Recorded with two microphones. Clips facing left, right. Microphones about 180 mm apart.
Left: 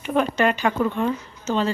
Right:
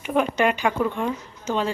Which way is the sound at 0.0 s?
10° right (ahead or behind).